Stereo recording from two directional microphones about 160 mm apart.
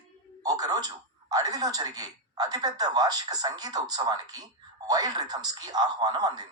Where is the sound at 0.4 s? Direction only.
25° right (ahead or behind).